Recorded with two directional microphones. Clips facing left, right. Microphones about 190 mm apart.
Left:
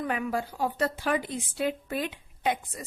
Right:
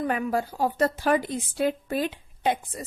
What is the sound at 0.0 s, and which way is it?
A woman's voice, 40° right (ahead or behind).